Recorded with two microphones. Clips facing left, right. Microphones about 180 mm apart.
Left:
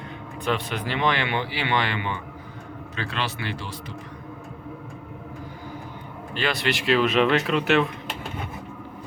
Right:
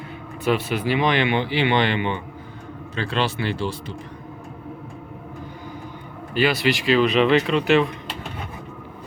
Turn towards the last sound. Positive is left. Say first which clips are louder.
# right 3 dB
turn(degrees=0)  # may be behind; listen again after turning